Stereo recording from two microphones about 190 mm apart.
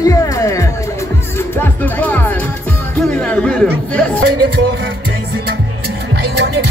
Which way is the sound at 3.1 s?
5° left (ahead or behind).